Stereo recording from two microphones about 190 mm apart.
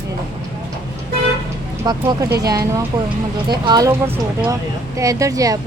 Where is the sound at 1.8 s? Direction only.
20° right (ahead or behind).